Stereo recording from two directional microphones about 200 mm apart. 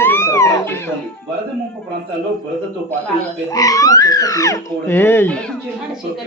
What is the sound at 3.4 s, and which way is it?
Speech, 15° left (ahead or behind).